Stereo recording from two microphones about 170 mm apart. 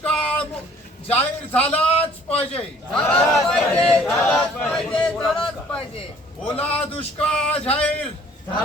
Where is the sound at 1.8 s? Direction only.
35° left (ahead or behind).